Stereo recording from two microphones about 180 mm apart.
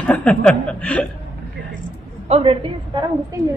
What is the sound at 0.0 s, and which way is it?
Chuckle, 5° left (ahead or behind).